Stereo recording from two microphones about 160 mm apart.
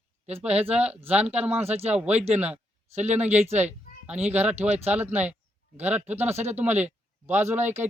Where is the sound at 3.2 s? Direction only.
45° right (ahead or behind).